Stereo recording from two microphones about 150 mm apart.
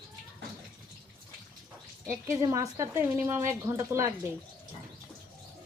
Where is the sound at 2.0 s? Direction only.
20° right (ahead or behind).